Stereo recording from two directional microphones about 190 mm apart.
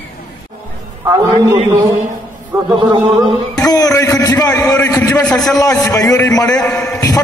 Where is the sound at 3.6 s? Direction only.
20° left (ahead or behind).